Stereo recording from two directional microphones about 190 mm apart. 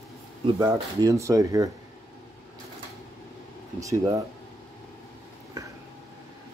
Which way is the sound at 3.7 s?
20° right (ahead or behind).